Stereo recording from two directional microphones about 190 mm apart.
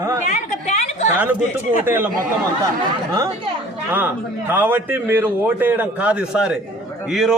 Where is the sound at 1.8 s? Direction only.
10° right (ahead or behind).